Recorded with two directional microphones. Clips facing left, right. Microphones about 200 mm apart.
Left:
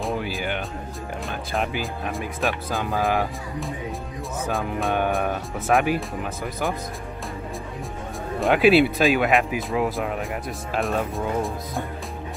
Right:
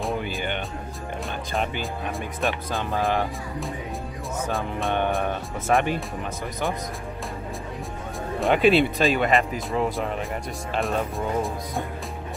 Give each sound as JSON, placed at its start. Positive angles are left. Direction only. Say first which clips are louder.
{"t": 0.0, "sound": "music", "louder": "left 1 dB", "side_deg": 0}
{"t": 1.5, "sound": "speech", "louder": "left 2 dB", "side_deg": 0}
{"t": 8.4, "sound": "speech", "louder": "left 2 dB", "side_deg": 5}